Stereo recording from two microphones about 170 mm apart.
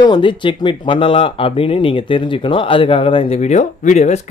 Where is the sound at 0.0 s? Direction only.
25° left (ahead or behind).